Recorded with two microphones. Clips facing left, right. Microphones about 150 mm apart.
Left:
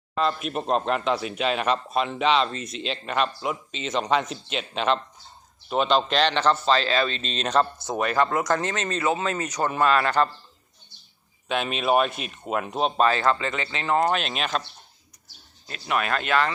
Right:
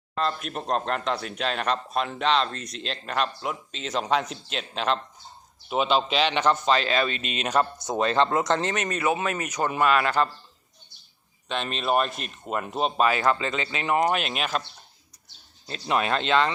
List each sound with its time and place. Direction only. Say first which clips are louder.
0.1 s speech: left 3 dB; 5° left (ahead or behind)
7.9 s speech: right 1 dB; 25° right (ahead or behind)
11.4 s speech: left 3 dB; 5° left (ahead or behind)
15.7 s speech: right 1 dB; 25° right (ahead or behind)